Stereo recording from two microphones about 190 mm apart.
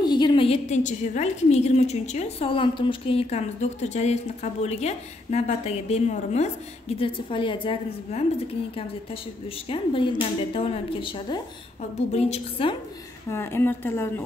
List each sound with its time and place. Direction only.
0.0 s a woman's voice: 25° left (ahead or behind)
9.7 s a woman's voice: 25° left (ahead or behind)
13.3 s speech: 10° left (ahead or behind)